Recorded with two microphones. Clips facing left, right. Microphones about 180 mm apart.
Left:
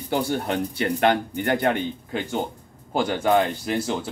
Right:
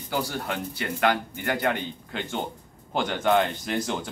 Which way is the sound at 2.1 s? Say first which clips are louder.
Left 2 dB; 10° left (ahead or behind).